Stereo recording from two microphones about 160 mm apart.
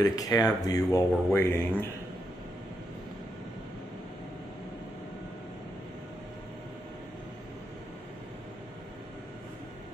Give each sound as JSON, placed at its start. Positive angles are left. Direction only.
{"t": 0.0, "sound": "speech", "side_deg": 20}